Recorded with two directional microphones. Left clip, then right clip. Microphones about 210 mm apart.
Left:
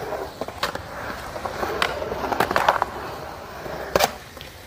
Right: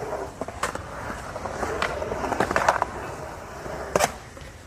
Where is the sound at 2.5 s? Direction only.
10° right (ahead or behind).